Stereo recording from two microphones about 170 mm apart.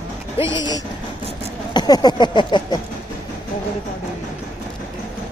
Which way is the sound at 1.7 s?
25° left (ahead or behind).